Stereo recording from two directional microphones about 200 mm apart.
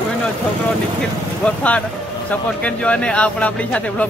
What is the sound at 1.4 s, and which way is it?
A man's voice, 5° left (ahead or behind).